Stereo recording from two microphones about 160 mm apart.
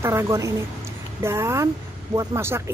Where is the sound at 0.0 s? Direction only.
15° right (ahead or behind).